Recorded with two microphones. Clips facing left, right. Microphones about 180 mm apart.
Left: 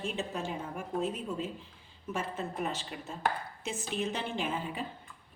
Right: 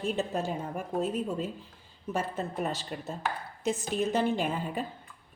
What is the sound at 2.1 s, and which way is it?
A woman's voice, 40° right (ahead or behind).